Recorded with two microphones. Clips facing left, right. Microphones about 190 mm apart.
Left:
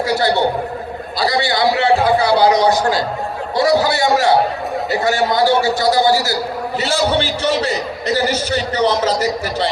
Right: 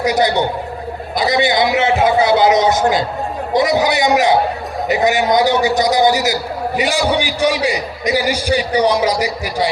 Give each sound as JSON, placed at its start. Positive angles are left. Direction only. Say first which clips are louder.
{"t": 0.0, "sound": "a man's voice", "louder": "right 1 dB", "side_deg": -20}